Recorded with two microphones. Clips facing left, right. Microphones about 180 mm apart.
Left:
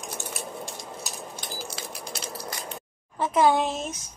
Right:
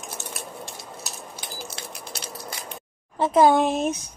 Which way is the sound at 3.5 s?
55° right (ahead or behind).